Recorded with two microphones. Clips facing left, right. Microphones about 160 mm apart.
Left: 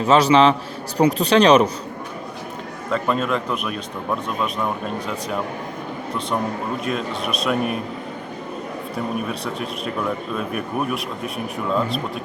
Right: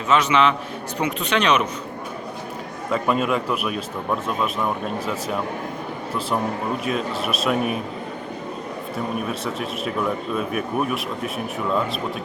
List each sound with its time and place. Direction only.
0.0 s speech: 35° left (ahead or behind)
2.9 s a man's voice: 5° right (ahead or behind)
6.8 s speech: 5° right (ahead or behind)
9.1 s speech: centre (ahead or behind)